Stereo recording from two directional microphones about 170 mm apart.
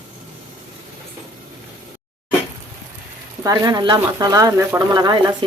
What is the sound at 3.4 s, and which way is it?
Speech, 20° right (ahead or behind).